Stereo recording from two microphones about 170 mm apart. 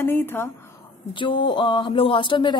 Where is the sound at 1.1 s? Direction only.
30° left (ahead or behind).